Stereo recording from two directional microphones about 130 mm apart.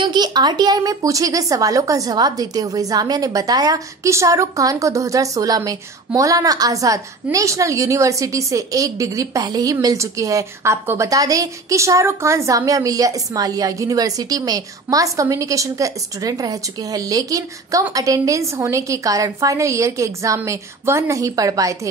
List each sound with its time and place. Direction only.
0.0 s speech: 35° right (ahead or behind)